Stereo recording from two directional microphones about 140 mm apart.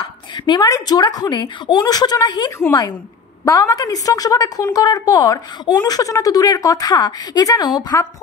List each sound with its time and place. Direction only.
0.0 s a woman's voice: 30° left (ahead or behind)